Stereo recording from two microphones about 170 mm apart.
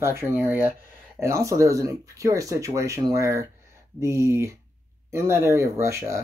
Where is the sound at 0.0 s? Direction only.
15° right (ahead or behind).